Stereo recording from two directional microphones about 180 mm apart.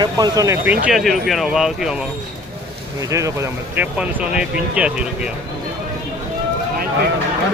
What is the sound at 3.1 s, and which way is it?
Speech, 15° right (ahead or behind).